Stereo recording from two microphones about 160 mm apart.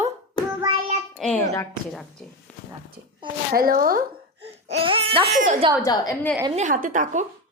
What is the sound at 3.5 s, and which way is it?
Speech, 65° right (ahead or behind).